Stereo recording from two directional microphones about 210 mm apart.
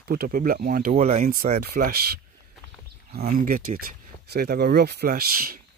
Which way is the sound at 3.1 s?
45° right (ahead or behind).